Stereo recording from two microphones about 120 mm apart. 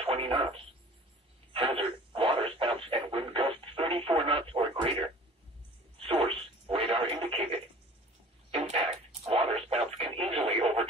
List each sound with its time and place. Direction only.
0.0 s speech: 50° right (ahead or behind)
1.5 s radio: 50° right (ahead or behind)
8.5 s a sound: 55° right (ahead or behind)
9.3 s radio: 50° right (ahead or behind)